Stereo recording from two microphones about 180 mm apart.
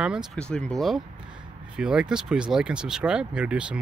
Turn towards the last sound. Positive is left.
turn(degrees=-5)  # may be behind; listen again after turning